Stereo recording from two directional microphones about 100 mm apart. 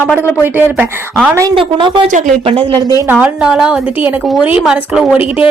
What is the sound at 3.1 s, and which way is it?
A woman's voice, 15° right (ahead or behind).